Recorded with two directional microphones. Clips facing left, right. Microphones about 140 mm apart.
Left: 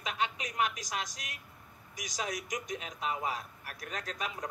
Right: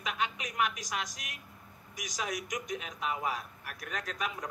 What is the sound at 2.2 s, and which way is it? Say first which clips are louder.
A man's voice: even; 30° left (ahead or behind).